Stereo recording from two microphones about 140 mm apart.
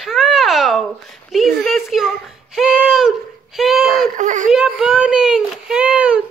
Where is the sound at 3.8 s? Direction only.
80° right; by 4.5 s 65° right (ahead or behind).